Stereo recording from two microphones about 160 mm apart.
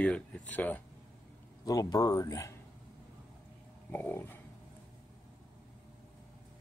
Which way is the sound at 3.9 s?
10° left (ahead or behind).